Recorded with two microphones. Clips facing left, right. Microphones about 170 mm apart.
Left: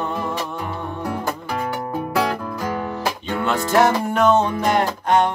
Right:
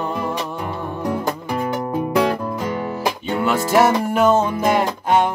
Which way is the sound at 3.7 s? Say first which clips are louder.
Right 1 dB; 5° right (ahead or behind).